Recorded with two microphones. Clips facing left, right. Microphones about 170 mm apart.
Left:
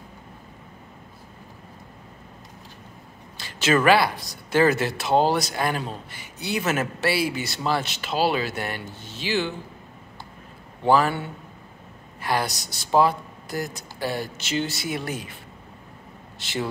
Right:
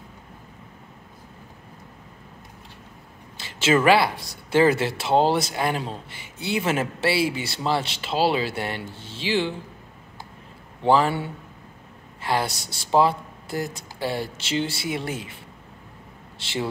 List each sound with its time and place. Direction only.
3.3 s speech: 25° right (ahead or behind)
10.8 s speech: 25° right (ahead or behind)
16.3 s speech: 30° right (ahead or behind)